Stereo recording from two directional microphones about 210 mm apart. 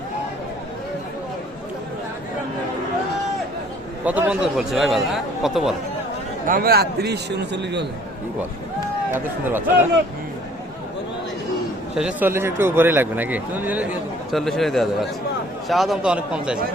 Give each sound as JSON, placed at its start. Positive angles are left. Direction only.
{"t": 4.0, "sound": "a man's voice", "side_deg": -5}
{"t": 6.4, "sound": "a man's voice", "side_deg": -45}
{"t": 9.1, "sound": "speech", "side_deg": -10}
{"t": 11.9, "sound": "a man's voice", "side_deg": -5}